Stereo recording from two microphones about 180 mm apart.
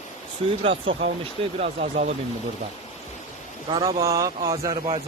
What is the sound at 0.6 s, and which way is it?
Speech, 30° right (ahead or behind).